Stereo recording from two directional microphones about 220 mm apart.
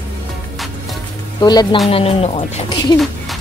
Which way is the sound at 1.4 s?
20° left (ahead or behind).